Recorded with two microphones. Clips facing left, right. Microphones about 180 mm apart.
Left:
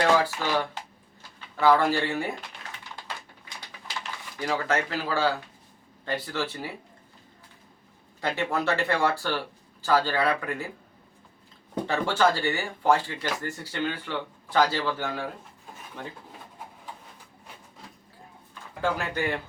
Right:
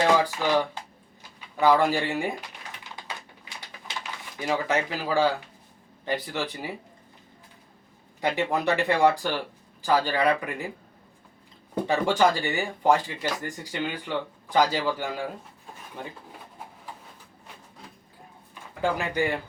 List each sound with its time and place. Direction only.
0.0 s speech: 15° right (ahead or behind)
3.9 s a sound: 20° right (ahead or behind)
4.4 s speech: 20° right (ahead or behind)
8.2 s speech: 15° right (ahead or behind)
11.9 s speech: 15° right (ahead or behind)
18.8 s speech: 15° right (ahead or behind)